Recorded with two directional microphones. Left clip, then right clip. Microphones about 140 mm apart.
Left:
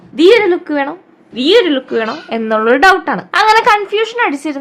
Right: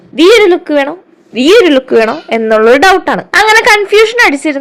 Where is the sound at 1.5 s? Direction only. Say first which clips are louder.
Right 6 dB; 25° right (ahead or behind).